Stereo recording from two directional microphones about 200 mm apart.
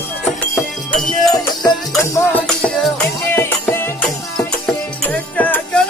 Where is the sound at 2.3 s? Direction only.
5° left (ahead or behind).